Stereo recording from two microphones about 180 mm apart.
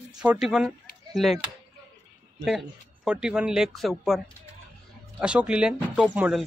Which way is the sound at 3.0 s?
5° right (ahead or behind).